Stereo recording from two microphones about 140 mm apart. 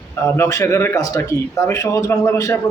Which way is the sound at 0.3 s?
20° left (ahead or behind).